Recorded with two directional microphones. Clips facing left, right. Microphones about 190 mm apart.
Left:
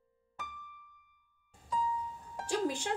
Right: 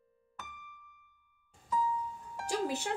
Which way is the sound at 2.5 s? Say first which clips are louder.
Left 1 dB; 10° right (ahead or behind).